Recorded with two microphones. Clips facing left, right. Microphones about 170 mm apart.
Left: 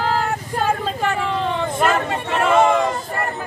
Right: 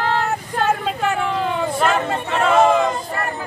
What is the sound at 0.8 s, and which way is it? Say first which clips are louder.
Hubbub: right 1 dB; 5° right (ahead or behind).